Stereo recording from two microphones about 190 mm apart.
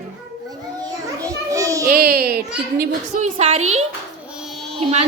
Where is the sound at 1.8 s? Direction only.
55° right (ahead or behind).